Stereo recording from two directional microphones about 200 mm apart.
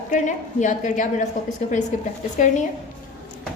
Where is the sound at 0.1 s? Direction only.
40° left (ahead or behind).